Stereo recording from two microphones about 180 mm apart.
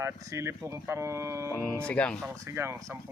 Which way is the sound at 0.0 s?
15° right (ahead or behind).